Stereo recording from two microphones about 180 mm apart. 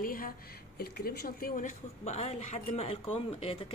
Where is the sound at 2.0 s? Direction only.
40° left (ahead or behind).